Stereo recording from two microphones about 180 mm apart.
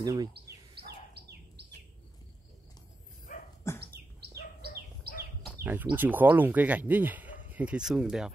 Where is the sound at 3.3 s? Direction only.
45° left (ahead or behind).